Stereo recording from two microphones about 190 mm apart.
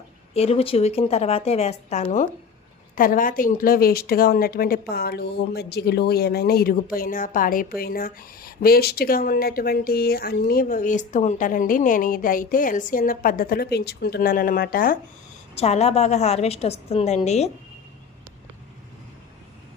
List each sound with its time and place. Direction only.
0.3 s a woman's voice: 30° left (ahead or behind); by 14.9 s 50° left (ahead or behind)
15.5 s a woman's voice: 35° left (ahead or behind)